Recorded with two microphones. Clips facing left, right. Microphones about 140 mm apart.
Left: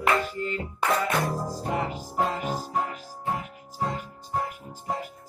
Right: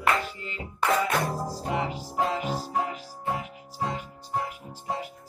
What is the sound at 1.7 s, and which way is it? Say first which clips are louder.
Music: even; 45° left (ahead or behind).